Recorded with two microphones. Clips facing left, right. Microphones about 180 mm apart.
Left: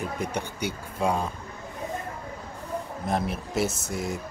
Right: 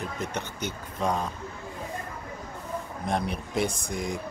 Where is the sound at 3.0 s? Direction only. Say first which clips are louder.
Left 1 dB; 5° left (ahead or behind).